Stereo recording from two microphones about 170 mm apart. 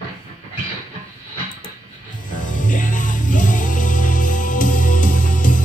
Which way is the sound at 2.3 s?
50° left (ahead or behind).